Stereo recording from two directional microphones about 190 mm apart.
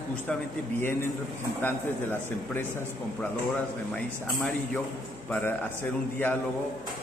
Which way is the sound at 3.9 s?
5° left (ahead or behind).